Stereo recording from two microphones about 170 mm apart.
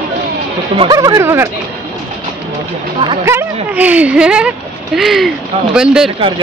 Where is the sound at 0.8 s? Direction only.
25° right (ahead or behind).